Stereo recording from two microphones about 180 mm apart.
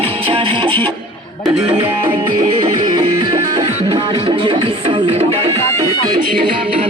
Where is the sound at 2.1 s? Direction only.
25° right (ahead or behind).